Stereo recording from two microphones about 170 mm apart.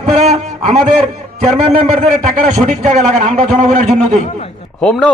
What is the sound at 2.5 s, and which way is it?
A man's voice, 40° right (ahead or behind).